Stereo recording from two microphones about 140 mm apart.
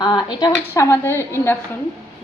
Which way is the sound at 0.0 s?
30° left (ahead or behind).